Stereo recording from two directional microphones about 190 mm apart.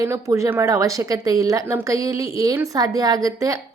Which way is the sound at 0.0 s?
15° right (ahead or behind).